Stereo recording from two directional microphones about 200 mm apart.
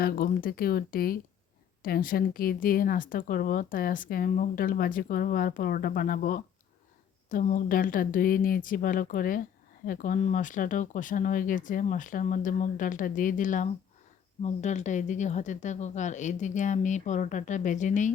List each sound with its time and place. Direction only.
0.0 s speech: 45° left (ahead or behind)